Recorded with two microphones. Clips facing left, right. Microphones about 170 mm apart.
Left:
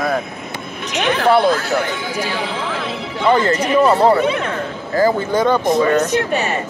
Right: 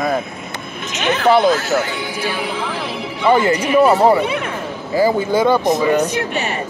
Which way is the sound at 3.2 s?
10° right (ahead or behind).